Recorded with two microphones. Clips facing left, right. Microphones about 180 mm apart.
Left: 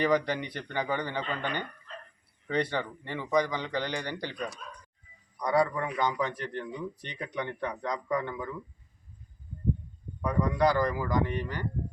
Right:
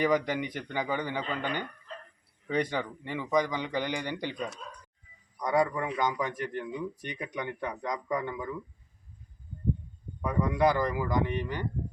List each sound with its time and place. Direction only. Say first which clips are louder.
0.0 s a man's voice: even; 15° right (ahead or behind)
5.4 s a man's voice: even; 10° right (ahead or behind)
10.2 s a man's voice: even; 10° right (ahead or behind)